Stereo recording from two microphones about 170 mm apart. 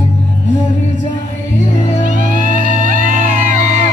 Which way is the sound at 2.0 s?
50° right (ahead or behind).